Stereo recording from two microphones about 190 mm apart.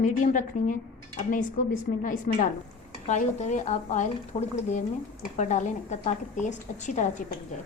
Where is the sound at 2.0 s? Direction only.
45° left (ahead or behind).